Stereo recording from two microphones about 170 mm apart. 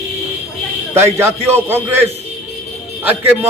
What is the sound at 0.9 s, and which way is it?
Speech, 15° right (ahead or behind).